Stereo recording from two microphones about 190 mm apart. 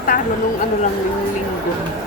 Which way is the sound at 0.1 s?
50° left (ahead or behind).